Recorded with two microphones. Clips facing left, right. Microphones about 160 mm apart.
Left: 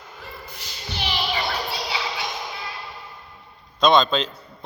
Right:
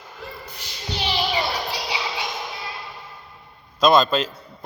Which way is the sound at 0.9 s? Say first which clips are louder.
Right 3 dB; 20° right (ahead or behind).